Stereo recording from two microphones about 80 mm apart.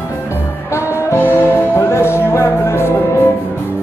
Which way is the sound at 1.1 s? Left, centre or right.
Left.